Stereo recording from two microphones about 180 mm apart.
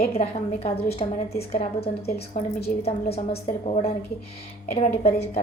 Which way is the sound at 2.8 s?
35° left (ahead or behind).